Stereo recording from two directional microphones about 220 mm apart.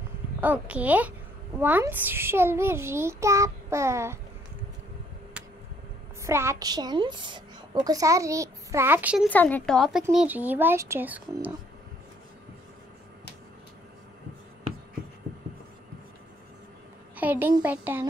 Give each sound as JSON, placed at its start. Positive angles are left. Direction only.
{"t": 0.4, "sound": "a woman's voice", "side_deg": -5}
{"t": 5.4, "sound": "a sound", "side_deg": -5}
{"t": 6.2, "sound": "a woman's voice", "side_deg": -10}
{"t": 9.3, "sound": "a woman's voice", "side_deg": 10}
{"t": 17.2, "sound": "a woman's voice", "side_deg": -10}